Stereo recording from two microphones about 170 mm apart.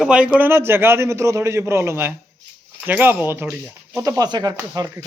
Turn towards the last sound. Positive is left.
turn(degrees=-20)  # may be behind; listen again after turning